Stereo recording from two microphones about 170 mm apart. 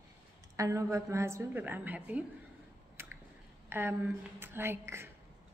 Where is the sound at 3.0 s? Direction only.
15° right (ahead or behind).